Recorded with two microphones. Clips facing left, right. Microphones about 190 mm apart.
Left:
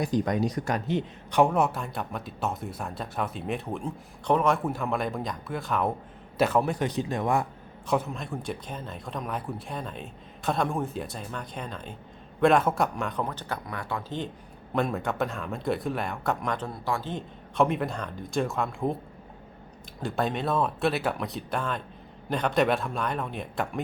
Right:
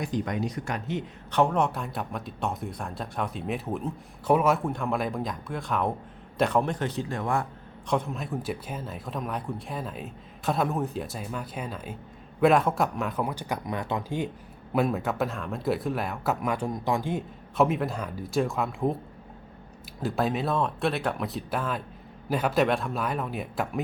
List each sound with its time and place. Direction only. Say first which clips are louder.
0.0 s speech: left 3 dB; 35° left (ahead or behind)
1.3 s a man's voice: left 1 dB; 10° left (ahead or behind)
7.9 s speech: even; 5° left (ahead or behind); by 14.3 s 15° right (ahead or behind)
14.7 s speech: right 2 dB; 5° right (ahead or behind)
20.0 s speech: right 1 dB; centre (ahead or behind)